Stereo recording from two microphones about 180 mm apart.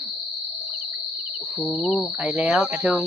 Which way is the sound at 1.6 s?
Centre (ahead or behind).